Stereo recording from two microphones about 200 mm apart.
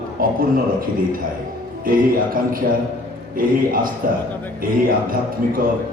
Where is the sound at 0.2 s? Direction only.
45° right (ahead or behind).